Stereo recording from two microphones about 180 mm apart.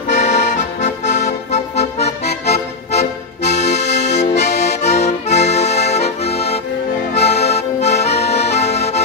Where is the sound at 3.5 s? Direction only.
70° left (ahead or behind).